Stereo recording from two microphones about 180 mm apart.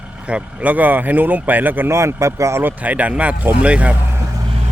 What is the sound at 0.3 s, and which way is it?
Speech, 5° right (ahead or behind).